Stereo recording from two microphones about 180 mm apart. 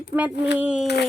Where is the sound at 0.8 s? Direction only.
65° left (ahead or behind).